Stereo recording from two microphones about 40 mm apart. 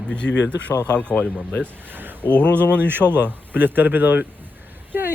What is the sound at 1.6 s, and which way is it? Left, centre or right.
Speech, right.